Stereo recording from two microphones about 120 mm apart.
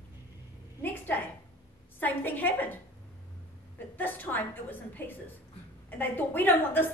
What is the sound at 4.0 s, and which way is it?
A woman's voice, 15° left (ahead or behind).